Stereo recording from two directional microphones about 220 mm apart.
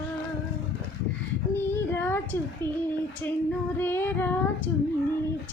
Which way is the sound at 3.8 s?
10° left (ahead or behind).